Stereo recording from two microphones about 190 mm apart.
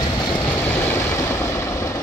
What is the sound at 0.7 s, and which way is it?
Vehicle, 10° left (ahead or behind).